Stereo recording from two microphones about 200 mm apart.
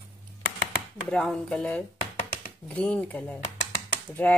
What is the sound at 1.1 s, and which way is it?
Speech, 5° left (ahead or behind).